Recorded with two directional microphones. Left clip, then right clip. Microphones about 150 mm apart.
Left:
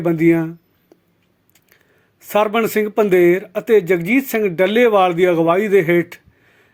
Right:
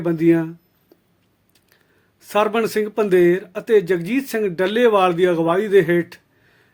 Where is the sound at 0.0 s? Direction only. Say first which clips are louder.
Left 2 dB; 20° left (ahead or behind).